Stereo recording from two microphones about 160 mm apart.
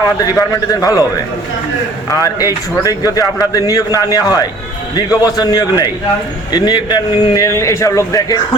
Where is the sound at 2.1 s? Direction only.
20° left (ahead or behind).